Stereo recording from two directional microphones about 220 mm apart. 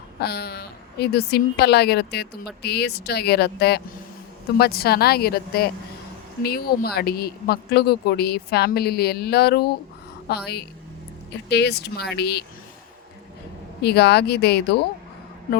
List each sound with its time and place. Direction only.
0.2 s speech: 45° left (ahead or behind)
13.8 s speech: 50° left (ahead or behind)